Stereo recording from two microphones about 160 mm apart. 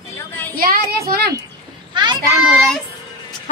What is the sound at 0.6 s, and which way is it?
Speech, 70° right (ahead or behind).